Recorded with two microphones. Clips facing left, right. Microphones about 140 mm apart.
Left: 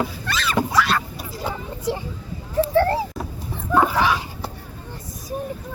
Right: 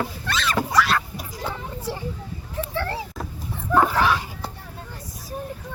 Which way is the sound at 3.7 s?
Centre (ahead or behind).